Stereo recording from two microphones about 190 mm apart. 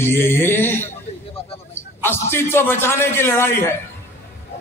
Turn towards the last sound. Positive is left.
turn(degrees=10)  # may be behind; listen again after turning